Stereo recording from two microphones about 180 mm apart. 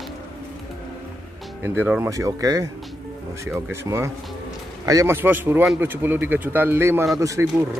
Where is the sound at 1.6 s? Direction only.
10° right (ahead or behind).